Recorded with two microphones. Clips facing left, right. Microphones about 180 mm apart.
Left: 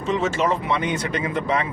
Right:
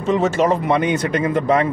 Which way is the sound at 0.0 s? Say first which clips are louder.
Right 5 dB; 50° right (ahead or behind).